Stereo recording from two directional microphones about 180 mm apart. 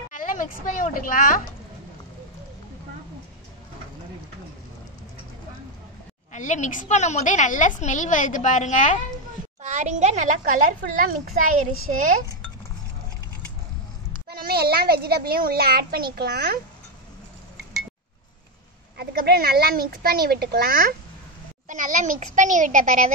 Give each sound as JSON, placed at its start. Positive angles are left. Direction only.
{"t": 0.1, "sound": "a woman's voice", "side_deg": 50}
{"t": 6.3, "sound": "a woman's voice", "side_deg": 40}
{"t": 9.6, "sound": "a child's voice", "side_deg": -40}
{"t": 14.3, "sound": "a child's voice", "side_deg": -60}
{"t": 18.9, "sound": "speech", "side_deg": -60}
{"t": 21.6, "sound": "a child's voice", "side_deg": -45}